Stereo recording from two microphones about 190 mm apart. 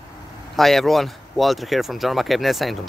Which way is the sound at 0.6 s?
Centre (ahead or behind).